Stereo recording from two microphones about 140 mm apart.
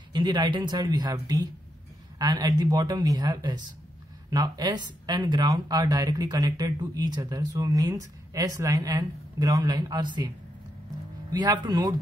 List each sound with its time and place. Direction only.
0.1 s speech: 30° right (ahead or behind)
11.3 s speech: 30° right (ahead or behind)